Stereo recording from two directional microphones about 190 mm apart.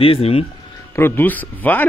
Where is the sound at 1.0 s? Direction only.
10° left (ahead or behind).